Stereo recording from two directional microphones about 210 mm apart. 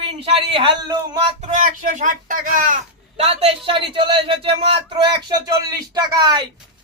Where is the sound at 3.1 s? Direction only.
30° right (ahead or behind).